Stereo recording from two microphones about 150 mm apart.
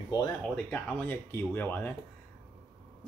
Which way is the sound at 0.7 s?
10° left (ahead or behind).